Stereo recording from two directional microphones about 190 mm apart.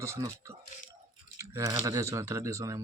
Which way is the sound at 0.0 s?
15° right (ahead or behind).